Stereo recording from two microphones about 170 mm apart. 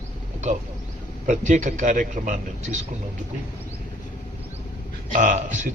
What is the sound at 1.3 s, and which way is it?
A man's voice, 45° right (ahead or behind).